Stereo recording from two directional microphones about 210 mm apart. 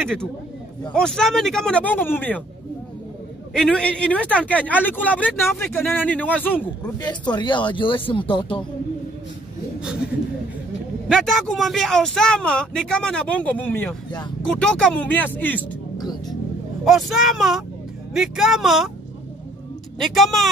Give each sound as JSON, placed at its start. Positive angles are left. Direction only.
{"t": 0.0, "sound": "speech", "side_deg": 5}
{"t": 3.5, "sound": "speech", "side_deg": 5}
{"t": 7.0, "sound": "speech", "side_deg": 20}
{"t": 11.1, "sound": "speech", "side_deg": 0}
{"t": 16.8, "sound": "speech", "side_deg": 0}
{"t": 20.0, "sound": "speech", "side_deg": 0}